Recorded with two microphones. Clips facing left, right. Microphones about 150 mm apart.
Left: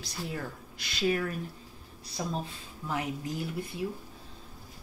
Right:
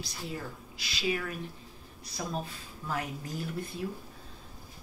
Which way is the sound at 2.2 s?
20° left (ahead or behind).